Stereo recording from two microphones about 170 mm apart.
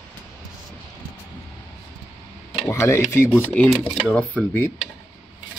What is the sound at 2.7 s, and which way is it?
Speech, 15° left (ahead or behind).